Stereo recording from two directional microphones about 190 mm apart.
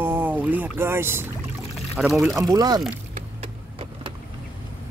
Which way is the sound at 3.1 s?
30° right (ahead or behind).